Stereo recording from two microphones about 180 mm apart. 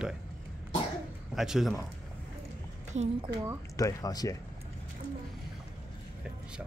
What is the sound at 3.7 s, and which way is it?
Speech, 20° left (ahead or behind).